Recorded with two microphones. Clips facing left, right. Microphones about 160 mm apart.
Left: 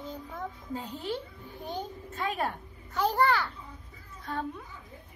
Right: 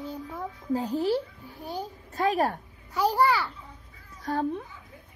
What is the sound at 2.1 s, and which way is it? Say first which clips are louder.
Speech: right 8 dB; 40° right (ahead or behind).